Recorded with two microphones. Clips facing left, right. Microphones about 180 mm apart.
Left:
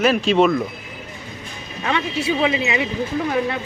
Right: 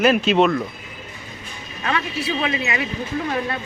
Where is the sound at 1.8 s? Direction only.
20° left (ahead or behind).